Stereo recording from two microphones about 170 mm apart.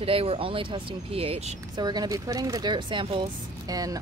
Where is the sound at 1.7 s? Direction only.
25° right (ahead or behind).